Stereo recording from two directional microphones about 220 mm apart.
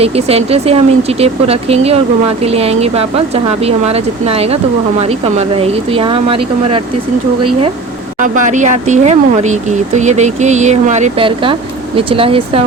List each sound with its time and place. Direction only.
0.0 s speech: 25° right (ahead or behind)
8.2 s speech: 35° right (ahead or behind)